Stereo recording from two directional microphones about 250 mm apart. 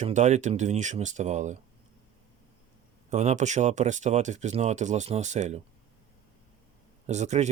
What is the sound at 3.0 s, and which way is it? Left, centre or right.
Speech, right.